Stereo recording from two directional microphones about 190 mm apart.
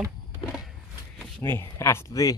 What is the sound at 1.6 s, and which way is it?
Speech, 15° left (ahead or behind).